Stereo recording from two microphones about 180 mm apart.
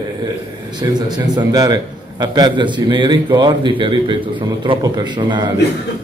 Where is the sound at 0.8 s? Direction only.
20° right (ahead or behind).